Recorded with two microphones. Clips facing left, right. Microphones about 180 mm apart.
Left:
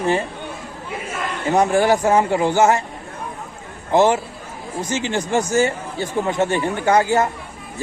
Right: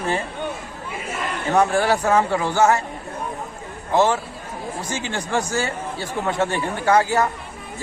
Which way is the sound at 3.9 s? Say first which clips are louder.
Left 3 dB; 20° left (ahead or behind).